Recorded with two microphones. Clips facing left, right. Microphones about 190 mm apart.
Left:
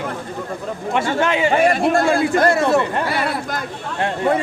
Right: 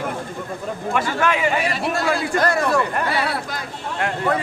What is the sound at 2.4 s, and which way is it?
Speech, 25° left (ahead or behind).